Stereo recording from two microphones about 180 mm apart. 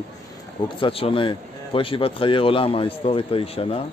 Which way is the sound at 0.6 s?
30° left (ahead or behind).